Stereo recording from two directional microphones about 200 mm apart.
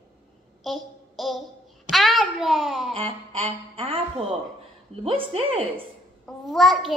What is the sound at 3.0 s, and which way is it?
A woman's voice, 30° right (ahead or behind).